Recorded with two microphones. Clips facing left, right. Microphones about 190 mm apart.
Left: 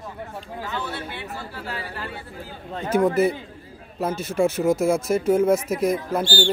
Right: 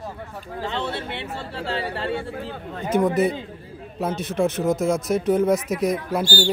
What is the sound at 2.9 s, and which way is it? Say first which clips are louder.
A man's voice: left 1 dB; 5° left (ahead or behind).